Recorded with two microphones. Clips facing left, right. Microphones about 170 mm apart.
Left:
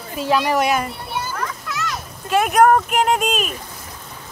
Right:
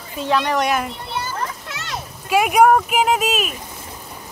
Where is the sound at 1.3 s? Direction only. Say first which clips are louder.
Left 1 dB; 30° right (ahead or behind).